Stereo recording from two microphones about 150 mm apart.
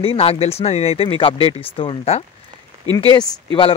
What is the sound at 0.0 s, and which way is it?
Speech, 40° left (ahead or behind).